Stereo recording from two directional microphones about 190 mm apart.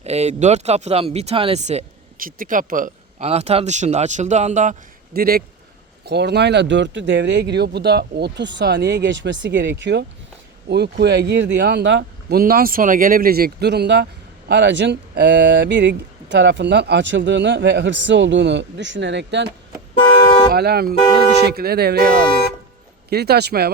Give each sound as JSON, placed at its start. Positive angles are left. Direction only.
{"t": 0.0, "sound": "speech", "side_deg": -35}
{"t": 20.5, "sound": "speech", "side_deg": -55}